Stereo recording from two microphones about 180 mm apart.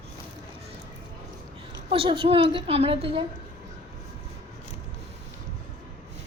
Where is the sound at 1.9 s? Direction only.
30° right (ahead or behind).